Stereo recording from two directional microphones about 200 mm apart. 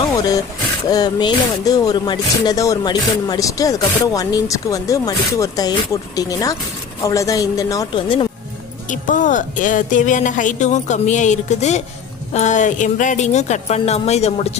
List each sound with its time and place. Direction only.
0.9 s speech: 20° left (ahead or behind)
8.9 s a woman's voice: 40° left (ahead or behind)